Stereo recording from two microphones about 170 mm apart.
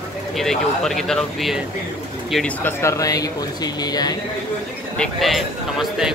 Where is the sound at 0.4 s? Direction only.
Centre (ahead or behind); by 4.2 s 25° left (ahead or behind).